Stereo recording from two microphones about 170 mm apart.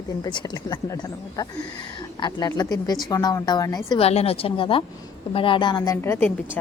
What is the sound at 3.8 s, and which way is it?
A woman's voice, 35° left (ahead or behind).